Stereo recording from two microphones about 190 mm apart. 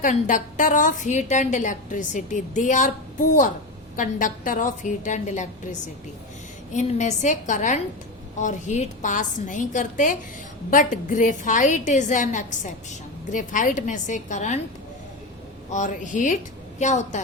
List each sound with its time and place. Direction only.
0.0 s a woman's voice: 45° left (ahead or behind)
6.7 s a woman's voice: 40° left (ahead or behind)
15.7 s a woman's voice: 40° left (ahead or behind)